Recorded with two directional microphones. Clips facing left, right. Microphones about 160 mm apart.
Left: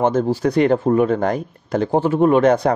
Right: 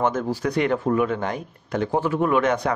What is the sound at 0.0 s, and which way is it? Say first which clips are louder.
Speech: left 6 dB; 30° left (ahead or behind).